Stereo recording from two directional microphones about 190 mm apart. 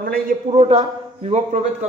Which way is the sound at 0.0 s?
50° right (ahead or behind).